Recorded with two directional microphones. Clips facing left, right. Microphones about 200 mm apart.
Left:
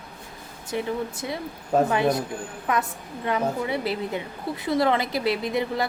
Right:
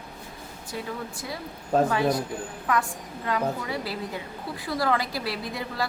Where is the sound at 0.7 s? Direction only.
20° left (ahead or behind).